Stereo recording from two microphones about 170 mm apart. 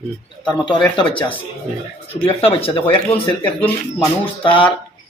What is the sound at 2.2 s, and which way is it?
A man's voice, 35° left (ahead or behind).